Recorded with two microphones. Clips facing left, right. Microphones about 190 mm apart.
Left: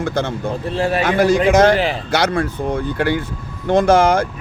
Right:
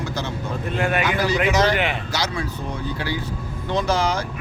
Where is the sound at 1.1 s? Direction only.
50° left (ahead or behind).